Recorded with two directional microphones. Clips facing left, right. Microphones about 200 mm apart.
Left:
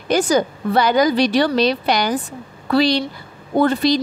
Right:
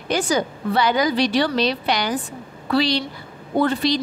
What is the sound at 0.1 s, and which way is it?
A woman's voice, 45° left (ahead or behind).